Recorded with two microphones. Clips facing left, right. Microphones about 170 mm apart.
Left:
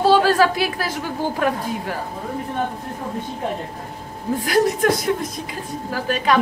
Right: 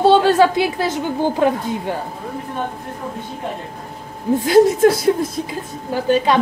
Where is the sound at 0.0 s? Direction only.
25° right (ahead or behind).